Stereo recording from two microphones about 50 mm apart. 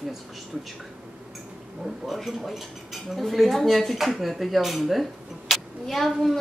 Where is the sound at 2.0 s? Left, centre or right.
Centre.